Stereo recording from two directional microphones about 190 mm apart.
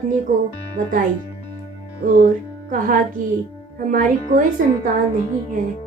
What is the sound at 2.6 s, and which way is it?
Speech, 45° right (ahead or behind).